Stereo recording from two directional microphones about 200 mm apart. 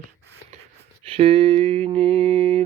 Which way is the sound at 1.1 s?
30° right (ahead or behind).